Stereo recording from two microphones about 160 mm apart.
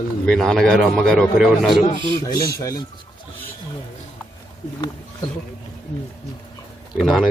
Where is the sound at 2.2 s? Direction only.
20° left (ahead or behind).